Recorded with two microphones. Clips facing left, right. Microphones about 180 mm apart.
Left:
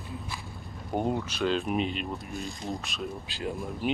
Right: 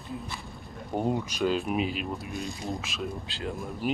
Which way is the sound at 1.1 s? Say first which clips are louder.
Right 1 dB; 10° right (ahead or behind).